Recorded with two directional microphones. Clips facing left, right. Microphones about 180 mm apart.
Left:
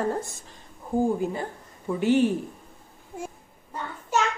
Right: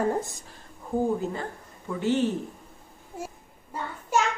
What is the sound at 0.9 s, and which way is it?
Speech, 10° left (ahead or behind).